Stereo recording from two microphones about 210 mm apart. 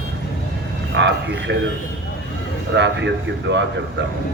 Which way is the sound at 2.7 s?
55° right (ahead or behind).